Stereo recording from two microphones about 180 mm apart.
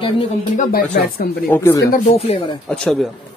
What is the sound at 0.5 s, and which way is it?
Speech, 45° left (ahead or behind).